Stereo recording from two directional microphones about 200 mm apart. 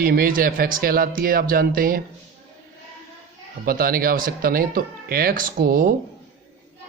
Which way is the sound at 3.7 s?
45° right (ahead or behind).